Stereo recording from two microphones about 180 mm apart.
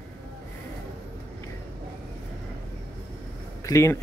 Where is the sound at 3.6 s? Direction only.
15° left (ahead or behind).